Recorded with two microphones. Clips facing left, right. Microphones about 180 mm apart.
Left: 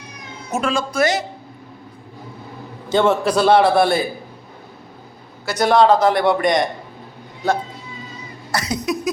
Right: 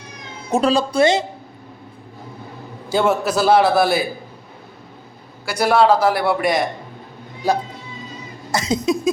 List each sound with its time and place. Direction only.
0.5 s speech: 35° right (ahead or behind)
2.9 s a man's voice: 10° right (ahead or behind)
5.5 s a man's voice: 10° right (ahead or behind)
8.5 s a sound: 25° right (ahead or behind)